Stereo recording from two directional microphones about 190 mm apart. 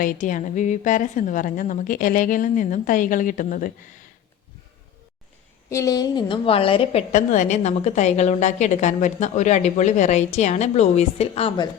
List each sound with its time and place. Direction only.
0.0 s a woman's voice: 40° left (ahead or behind)
5.6 s a woman's voice: 15° left (ahead or behind)
7.1 s a woman's voice: 40° left (ahead or behind)